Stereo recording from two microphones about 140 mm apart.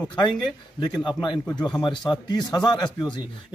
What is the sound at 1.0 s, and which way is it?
A man's voice, 30° left (ahead or behind).